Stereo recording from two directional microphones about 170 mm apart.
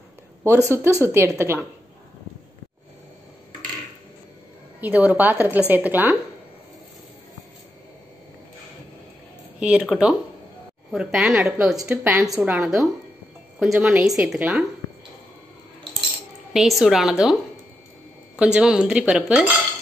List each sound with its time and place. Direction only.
0.4 s a woman's voice: 15° right (ahead or behind)
4.7 s a woman's voice: 10° right (ahead or behind)
9.6 s speech: 5° right (ahead or behind)
16.5 s speech: centre (ahead or behind)